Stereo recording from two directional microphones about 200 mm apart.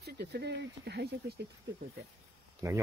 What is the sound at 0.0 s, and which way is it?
Speech, 55° right (ahead or behind).